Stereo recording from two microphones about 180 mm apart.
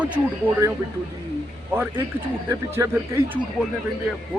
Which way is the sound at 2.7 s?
15° right (ahead or behind).